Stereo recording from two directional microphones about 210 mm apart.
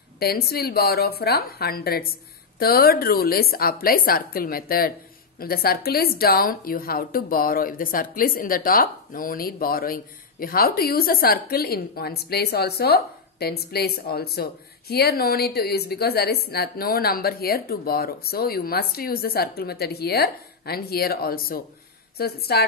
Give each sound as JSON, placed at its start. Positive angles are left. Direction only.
{"t": 0.2, "sound": "a woman's voice", "side_deg": 45}